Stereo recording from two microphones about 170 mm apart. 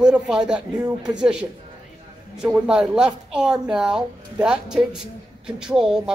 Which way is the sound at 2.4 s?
5° right (ahead or behind).